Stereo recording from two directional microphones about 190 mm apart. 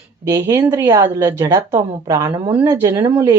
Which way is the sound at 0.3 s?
15° right (ahead or behind).